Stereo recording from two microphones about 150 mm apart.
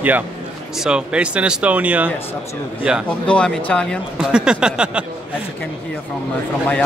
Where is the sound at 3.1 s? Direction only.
5° left (ahead or behind).